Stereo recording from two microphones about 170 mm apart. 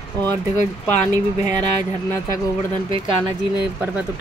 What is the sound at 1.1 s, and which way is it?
Speech, 25° right (ahead or behind).